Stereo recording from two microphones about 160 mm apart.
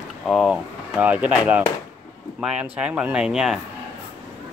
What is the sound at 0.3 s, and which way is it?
Speech, 5° right (ahead or behind).